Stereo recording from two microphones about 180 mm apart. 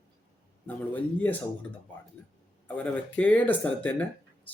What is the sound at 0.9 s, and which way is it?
Speech, 10° left (ahead or behind).